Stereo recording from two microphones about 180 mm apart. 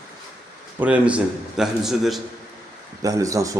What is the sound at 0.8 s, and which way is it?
A man's voice, 5° right (ahead or behind).